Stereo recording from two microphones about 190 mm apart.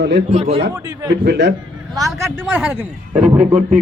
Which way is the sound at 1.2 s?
60° right (ahead or behind).